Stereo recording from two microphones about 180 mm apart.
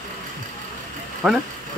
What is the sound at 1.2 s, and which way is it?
Speech, centre (ahead or behind).